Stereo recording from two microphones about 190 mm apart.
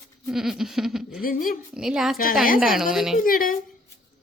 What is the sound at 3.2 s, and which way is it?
Speech, 50° left (ahead or behind).